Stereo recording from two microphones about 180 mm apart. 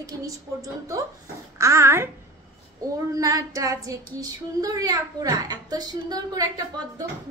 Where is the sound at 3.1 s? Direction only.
20° right (ahead or behind).